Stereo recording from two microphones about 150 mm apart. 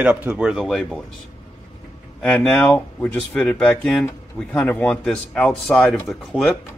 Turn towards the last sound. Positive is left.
turn(degrees=0)  # may be behind; listen again after turning